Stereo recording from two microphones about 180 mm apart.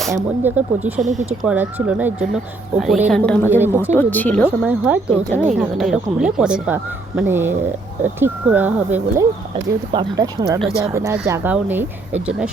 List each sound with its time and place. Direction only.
0.4 s speech: 10° right (ahead or behind); by 3.5 s 10° left (ahead or behind)
3.5 s speech: 10° right (ahead or behind)
3.9 s speech: 10° left (ahead or behind)
4.4 s speech: 10° right (ahead or behind)
5.0 s speech: 40° right (ahead or behind)
5.5 s speech: centre (ahead or behind)
9.9 s speech: 25° right (ahead or behind); by 12.2 s 10° right (ahead or behind)